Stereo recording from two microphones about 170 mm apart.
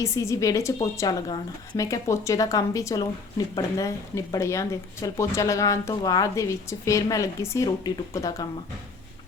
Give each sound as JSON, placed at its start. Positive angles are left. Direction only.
{"t": 0.0, "sound": "a woman's voice", "side_deg": 20}